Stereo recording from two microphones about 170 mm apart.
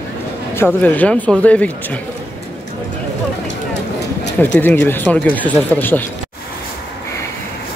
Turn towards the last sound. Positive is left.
turn(degrees=10)  # may be behind; listen again after turning